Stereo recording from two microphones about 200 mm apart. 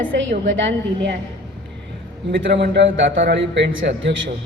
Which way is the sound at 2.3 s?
60° right (ahead or behind).